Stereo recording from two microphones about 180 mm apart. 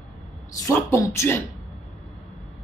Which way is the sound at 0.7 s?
20° left (ahead or behind).